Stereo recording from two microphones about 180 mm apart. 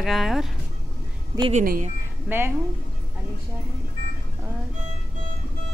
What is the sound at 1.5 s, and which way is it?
Speech, 45° right (ahead or behind).